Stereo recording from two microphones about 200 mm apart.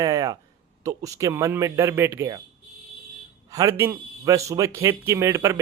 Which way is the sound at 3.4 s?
15° right (ahead or behind).